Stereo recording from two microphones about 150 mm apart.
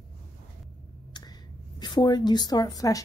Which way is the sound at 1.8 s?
30° left (ahead or behind).